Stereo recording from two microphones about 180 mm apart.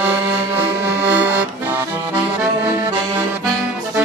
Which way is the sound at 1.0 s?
5° right (ahead or behind).